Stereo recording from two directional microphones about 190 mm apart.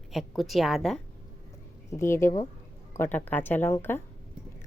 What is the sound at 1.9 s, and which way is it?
Speech, 15° left (ahead or behind).